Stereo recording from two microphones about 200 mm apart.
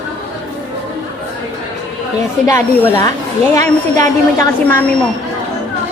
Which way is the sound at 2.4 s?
15° left (ahead or behind).